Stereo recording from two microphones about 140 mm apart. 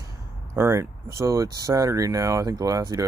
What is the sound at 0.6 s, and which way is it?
Speech, 20° right (ahead or behind).